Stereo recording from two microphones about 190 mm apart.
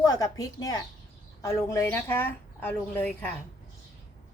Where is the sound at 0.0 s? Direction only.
20° left (ahead or behind).